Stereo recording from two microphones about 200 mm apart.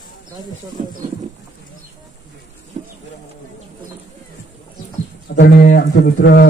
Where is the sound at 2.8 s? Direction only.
35° right (ahead or behind).